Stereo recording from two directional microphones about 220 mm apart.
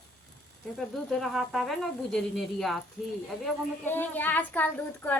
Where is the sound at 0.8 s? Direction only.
Centre (ahead or behind).